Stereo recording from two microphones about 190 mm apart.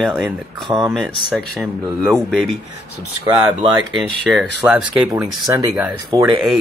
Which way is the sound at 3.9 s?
Centre (ahead or behind).